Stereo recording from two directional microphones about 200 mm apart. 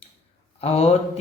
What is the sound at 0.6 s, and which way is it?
Speech, 30° left (ahead or behind).